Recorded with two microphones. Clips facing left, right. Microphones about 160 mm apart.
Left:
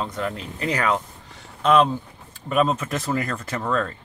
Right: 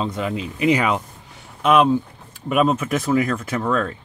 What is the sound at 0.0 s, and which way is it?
Speech, 15° right (ahead or behind).